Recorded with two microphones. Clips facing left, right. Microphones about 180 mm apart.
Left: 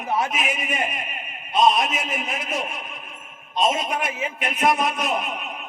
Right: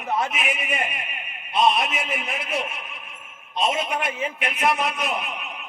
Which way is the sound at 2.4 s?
45° left (ahead or behind).